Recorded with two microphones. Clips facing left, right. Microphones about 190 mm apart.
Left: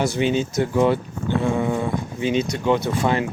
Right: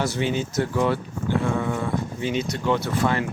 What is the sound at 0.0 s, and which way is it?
Speech, 15° left (ahead or behind).